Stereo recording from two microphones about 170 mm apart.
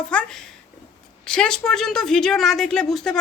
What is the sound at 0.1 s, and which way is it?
A woman's voice, 5° left (ahead or behind).